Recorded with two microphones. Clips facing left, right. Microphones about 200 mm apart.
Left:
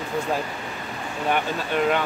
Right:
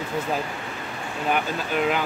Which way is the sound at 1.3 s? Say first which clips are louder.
Left 1 dB; centre (ahead or behind).